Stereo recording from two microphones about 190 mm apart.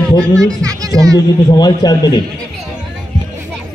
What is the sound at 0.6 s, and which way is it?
Music, 20° right (ahead or behind).